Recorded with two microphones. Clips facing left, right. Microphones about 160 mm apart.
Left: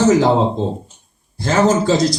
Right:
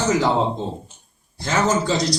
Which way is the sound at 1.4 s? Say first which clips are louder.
Left 6 dB; 50° left (ahead or behind).